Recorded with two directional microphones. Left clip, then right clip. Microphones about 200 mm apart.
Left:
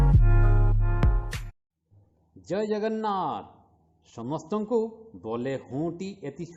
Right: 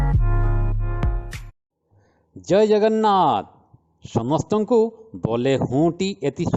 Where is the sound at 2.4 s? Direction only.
35° right (ahead or behind).